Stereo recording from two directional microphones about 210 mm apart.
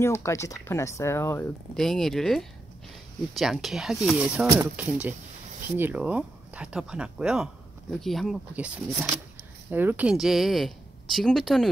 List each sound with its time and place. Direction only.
0.0 s speech: 15° left (ahead or behind)